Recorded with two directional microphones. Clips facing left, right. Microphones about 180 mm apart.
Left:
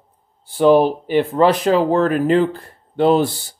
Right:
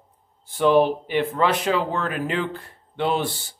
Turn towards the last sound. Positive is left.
turn(degrees=40)  # may be behind; listen again after turning